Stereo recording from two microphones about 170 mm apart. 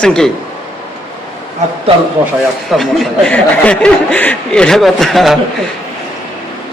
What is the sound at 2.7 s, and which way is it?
Speech, 5° left (ahead or behind).